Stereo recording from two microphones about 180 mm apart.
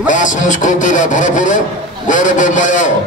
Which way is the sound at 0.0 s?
45° left (ahead or behind).